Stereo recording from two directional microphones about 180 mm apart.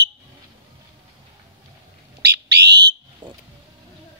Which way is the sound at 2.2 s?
70° right (ahead or behind).